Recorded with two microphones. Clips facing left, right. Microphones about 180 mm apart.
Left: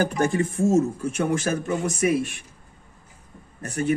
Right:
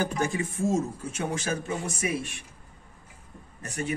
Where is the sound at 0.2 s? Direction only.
60° left (ahead or behind).